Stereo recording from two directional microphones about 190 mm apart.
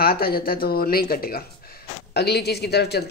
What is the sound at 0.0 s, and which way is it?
Speech, 55° left (ahead or behind).